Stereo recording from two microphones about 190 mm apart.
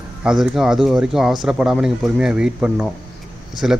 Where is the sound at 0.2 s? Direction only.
Centre (ahead or behind).